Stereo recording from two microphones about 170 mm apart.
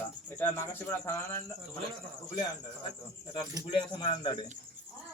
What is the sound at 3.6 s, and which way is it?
Speech, 30° left (ahead or behind).